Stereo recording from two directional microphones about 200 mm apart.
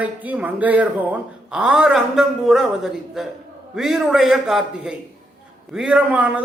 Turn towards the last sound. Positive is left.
turn(degrees=-5)  # may be behind; listen again after turning